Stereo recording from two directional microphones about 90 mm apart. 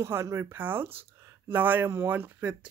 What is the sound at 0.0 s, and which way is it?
Speech, 30° right (ahead or behind).